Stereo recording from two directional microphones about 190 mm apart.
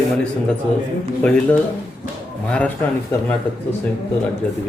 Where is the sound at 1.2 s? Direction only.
5° left (ahead or behind).